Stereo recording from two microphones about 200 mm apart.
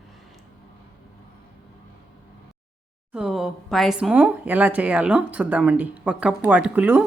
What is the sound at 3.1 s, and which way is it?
Speech, 5° right (ahead or behind).